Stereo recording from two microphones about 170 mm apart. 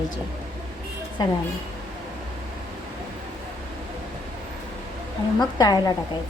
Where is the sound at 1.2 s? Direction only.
25° left (ahead or behind).